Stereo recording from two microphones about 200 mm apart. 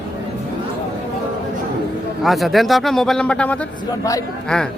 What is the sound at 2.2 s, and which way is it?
A man's voice, centre (ahead or behind).